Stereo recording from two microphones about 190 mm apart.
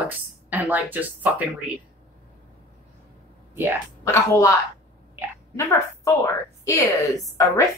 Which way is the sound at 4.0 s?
15° left (ahead or behind).